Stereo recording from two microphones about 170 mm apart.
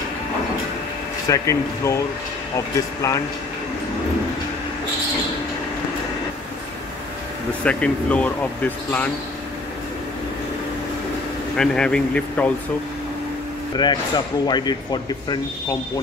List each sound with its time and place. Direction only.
1.3 s speech: 20° left (ahead or behind)
7.6 s speech: 5° left (ahead or behind)
11.5 s speech: 5° left (ahead or behind)
13.7 s speech: 25° left (ahead or behind)